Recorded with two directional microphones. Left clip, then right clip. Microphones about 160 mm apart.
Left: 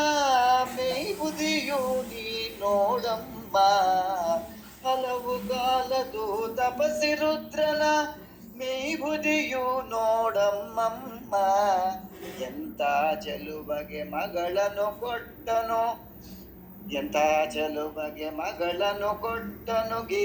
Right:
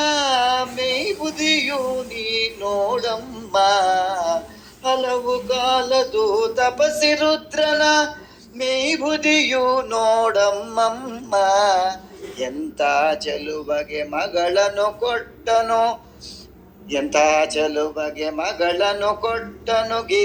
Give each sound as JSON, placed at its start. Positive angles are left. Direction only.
{"t": 0.0, "sound": "music", "side_deg": -20}
{"t": 4.8, "sound": "a man's voice", "side_deg": -25}